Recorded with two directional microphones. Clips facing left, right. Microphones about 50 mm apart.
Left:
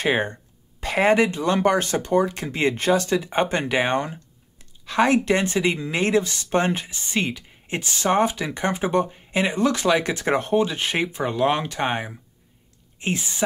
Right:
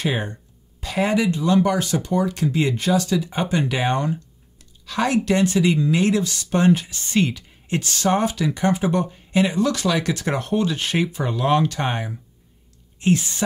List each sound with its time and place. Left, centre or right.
0.0 s speech: left
7.0 s speech: centre